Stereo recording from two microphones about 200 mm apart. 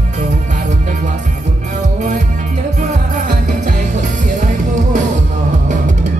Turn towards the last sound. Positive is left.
turn(degrees=-40)  # may be behind; listen again after turning